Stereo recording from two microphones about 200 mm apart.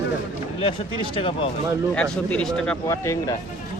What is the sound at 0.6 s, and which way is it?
Speech, 25° left (ahead or behind).